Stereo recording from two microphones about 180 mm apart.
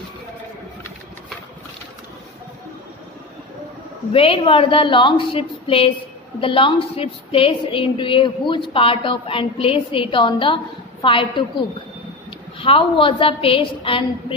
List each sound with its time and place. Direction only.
4.1 s a woman's voice: 30° left (ahead or behind)